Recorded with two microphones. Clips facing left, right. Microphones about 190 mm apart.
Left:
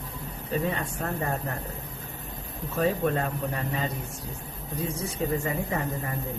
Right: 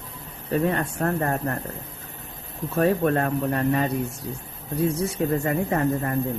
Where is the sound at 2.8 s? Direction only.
60° right (ahead or behind).